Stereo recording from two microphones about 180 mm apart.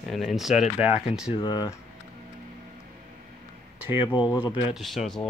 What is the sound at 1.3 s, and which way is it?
Speech, 25° left (ahead or behind).